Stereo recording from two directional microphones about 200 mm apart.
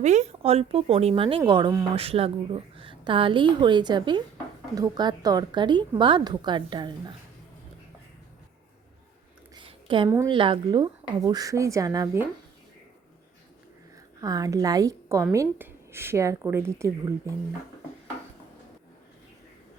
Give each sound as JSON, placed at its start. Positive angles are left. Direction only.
{"t": 0.0, "sound": "a woman's voice", "side_deg": -35}
{"t": 9.6, "sound": "a sound", "side_deg": -25}
{"t": 10.1, "sound": "speech", "side_deg": -15}
{"t": 10.3, "sound": "a woman's voice", "side_deg": -25}
{"t": 14.2, "sound": "speech", "side_deg": -20}